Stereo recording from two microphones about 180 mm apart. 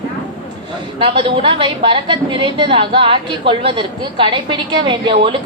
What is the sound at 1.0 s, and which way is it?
A woman's voice, 30° right (ahead or behind).